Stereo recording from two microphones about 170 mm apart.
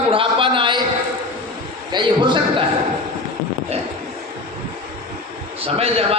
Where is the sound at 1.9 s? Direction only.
25° right (ahead or behind).